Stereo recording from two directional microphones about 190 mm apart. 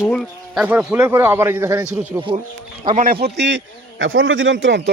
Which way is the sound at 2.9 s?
50° right (ahead or behind).